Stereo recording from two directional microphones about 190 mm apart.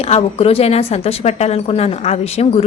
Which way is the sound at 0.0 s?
30° left (ahead or behind).